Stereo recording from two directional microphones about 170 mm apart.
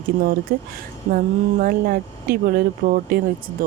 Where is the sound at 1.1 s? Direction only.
55° right (ahead or behind).